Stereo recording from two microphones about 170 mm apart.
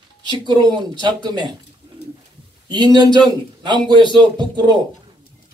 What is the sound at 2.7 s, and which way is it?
A man's voice, 25° right (ahead or behind).